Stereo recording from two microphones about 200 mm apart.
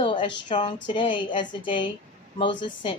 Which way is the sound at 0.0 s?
25° left (ahead or behind).